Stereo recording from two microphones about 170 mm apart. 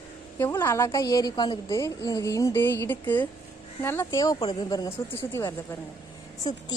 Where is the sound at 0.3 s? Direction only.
15° left (ahead or behind).